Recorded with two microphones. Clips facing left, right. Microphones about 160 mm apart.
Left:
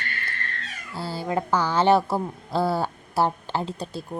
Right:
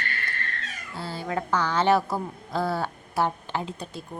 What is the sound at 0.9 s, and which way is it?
A woman's voice, 35° left (ahead or behind).